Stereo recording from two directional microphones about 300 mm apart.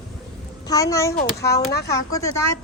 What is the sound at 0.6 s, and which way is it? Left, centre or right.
Speech, centre.